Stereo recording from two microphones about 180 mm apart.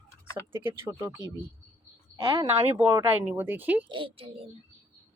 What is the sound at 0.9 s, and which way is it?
Speech, 15° right (ahead or behind).